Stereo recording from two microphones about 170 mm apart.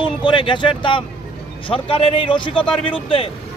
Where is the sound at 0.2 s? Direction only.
30° left (ahead or behind).